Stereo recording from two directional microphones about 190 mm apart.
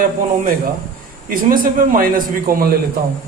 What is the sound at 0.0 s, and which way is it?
A man's voice, 50° right (ahead or behind).